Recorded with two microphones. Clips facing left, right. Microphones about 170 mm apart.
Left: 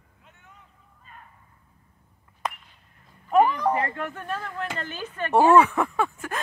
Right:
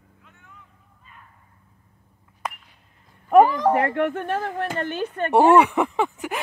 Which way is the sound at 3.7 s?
65° right (ahead or behind).